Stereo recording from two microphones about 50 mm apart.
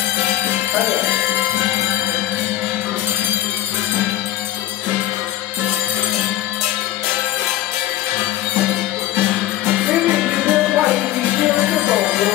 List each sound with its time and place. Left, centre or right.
9.8 s music: centre